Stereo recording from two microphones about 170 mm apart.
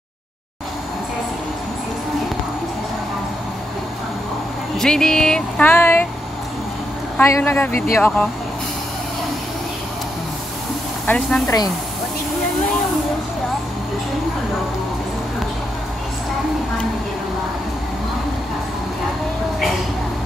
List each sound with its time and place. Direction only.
4.7 s speech: 5° left (ahead or behind)
7.2 s speech: 15° left (ahead or behind)
11.1 s speech: 5° left (ahead or behind)
11.4 s speech: 20° left (ahead or behind)